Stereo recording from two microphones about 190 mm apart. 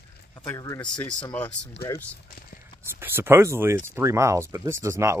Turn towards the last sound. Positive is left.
turn(degrees=-15)  # may be behind; listen again after turning